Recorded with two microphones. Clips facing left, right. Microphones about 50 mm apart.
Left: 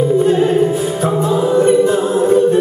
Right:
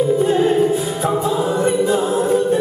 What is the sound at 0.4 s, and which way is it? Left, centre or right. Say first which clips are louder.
Music: left 2 dB; left.